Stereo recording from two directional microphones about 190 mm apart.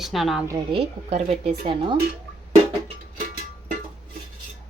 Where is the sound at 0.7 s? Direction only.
30° right (ahead or behind).